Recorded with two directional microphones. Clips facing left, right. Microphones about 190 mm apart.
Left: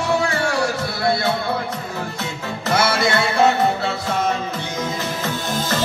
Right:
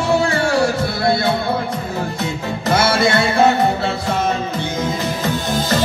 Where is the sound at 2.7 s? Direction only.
30° right (ahead or behind).